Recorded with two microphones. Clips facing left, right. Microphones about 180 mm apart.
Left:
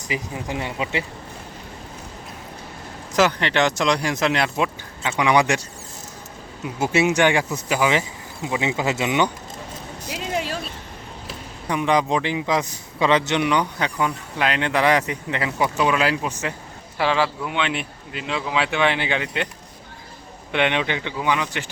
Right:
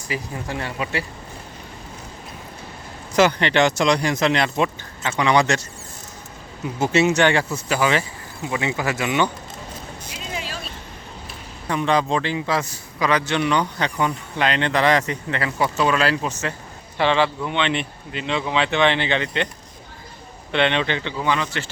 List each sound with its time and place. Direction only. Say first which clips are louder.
0.1 s speech: left 1 dB; 15° left (ahead or behind)
3.2 s speech: right 2 dB; centre (ahead or behind)
6.7 s a man's voice: right 1 dB; 10° left (ahead or behind)
10.1 s a sound: left 7 dB; 70° left (ahead or behind)
11.7 s a man's voice: even; 15° left (ahead or behind)
20.5 s a man's voice: right 1 dB; 10° left (ahead or behind)